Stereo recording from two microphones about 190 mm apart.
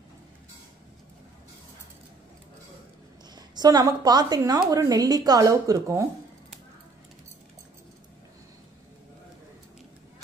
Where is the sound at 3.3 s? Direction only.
20° right (ahead or behind).